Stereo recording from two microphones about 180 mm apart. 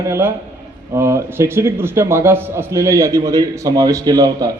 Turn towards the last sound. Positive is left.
turn(degrees=-20)  # may be behind; listen again after turning